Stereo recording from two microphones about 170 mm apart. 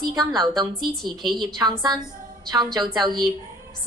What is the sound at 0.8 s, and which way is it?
Speech, centre (ahead or behind).